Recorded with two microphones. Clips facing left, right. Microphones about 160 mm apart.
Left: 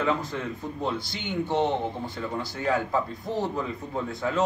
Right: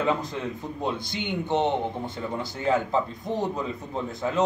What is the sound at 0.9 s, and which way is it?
Speech, 20° right (ahead or behind).